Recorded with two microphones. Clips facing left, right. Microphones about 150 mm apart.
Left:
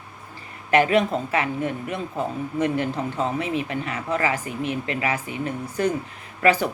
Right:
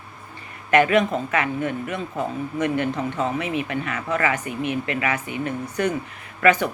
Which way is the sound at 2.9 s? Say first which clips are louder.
Right 1 dB; 35° left (ahead or behind).